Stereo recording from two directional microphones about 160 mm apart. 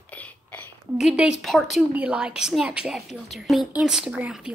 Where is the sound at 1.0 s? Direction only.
5° right (ahead or behind).